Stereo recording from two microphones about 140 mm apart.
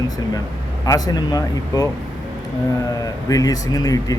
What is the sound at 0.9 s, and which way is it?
Speech, 25° left (ahead or behind).